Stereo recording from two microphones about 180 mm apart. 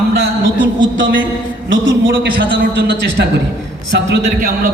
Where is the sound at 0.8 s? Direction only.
90° right.